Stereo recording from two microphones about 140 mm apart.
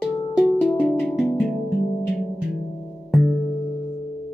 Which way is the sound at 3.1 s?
5° right (ahead or behind).